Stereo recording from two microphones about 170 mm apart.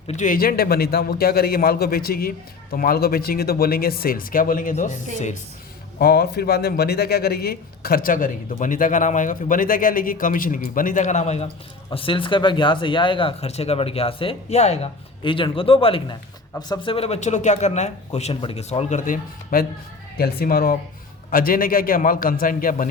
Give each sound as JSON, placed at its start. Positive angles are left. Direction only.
{"t": 0.1, "sound": "a man's voice", "side_deg": 50}
{"t": 6.0, "sound": "a man's voice", "side_deg": 65}
{"t": 11.9, "sound": "a man's voice", "side_deg": 30}
{"t": 20.1, "sound": "a man's voice", "side_deg": 65}